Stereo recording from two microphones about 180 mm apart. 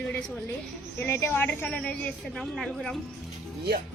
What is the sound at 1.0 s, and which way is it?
Speech, 10° left (ahead or behind).